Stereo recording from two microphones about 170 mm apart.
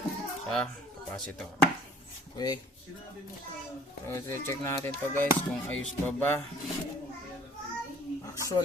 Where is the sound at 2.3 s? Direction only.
25° left (ahead or behind).